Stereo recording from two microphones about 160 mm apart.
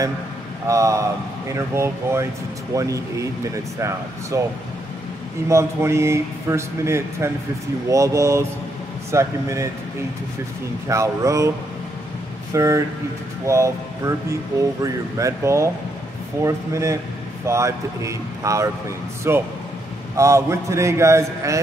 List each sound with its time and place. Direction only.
0.7 s speech: 20° right (ahead or behind)
5.5 s speech: 15° right (ahead or behind)
10.9 s speech: 20° right (ahead or behind)
12.5 s speech: 20° right (ahead or behind)